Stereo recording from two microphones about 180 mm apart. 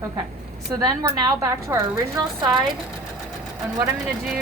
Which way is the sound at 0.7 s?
20° right (ahead or behind).